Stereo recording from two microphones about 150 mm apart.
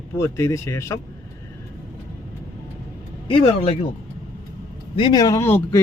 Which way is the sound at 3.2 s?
40° left (ahead or behind).